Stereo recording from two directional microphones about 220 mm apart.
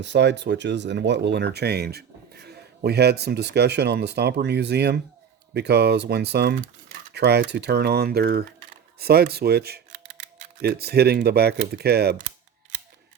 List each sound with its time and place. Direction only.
0.0 s speech: 50° right (ahead or behind)